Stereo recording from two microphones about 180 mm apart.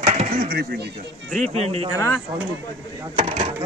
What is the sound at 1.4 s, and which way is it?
Speech, 35° right (ahead or behind).